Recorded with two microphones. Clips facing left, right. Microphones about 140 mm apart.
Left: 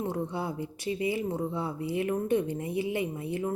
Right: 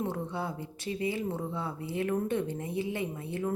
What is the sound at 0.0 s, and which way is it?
A woman's voice, 15° left (ahead or behind).